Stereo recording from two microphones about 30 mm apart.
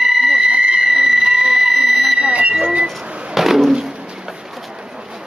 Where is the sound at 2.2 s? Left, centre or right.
Right.